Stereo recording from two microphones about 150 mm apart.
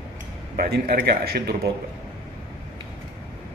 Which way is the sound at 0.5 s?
90° right.